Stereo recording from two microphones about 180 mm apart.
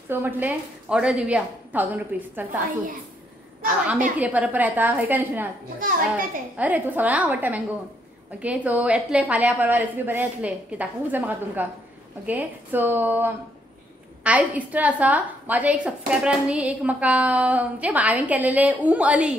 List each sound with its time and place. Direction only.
0.1 s a woman's voice: 10° right (ahead or behind)
3.6 s a woman's voice: 5° right (ahead or behind)
5.8 s a child's voice: 50° right (ahead or behind)
6.5 s a woman's voice: 10° right (ahead or behind)